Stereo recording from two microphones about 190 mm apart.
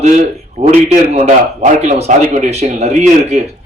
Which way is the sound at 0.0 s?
35° right (ahead or behind).